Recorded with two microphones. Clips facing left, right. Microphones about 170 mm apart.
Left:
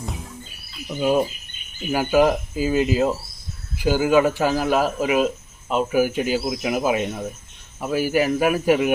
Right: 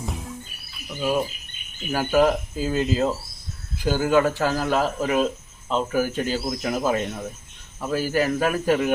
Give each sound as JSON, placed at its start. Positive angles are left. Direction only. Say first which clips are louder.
{"t": 0.9, "sound": "speech", "louder": "left 4 dB", "side_deg": 20}